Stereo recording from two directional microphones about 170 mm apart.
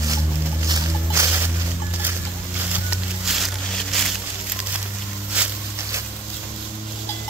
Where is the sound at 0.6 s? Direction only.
20° right (ahead or behind).